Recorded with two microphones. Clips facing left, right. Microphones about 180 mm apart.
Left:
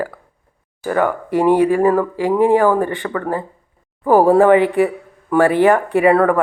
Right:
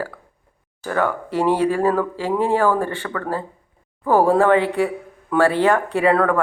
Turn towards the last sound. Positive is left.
turn(degrees=15)  # may be behind; listen again after turning